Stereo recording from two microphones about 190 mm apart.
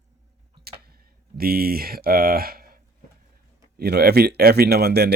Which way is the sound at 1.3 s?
50° right (ahead or behind).